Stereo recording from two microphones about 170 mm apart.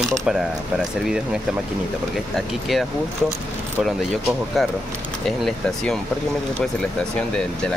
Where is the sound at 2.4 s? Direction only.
Centre (ahead or behind).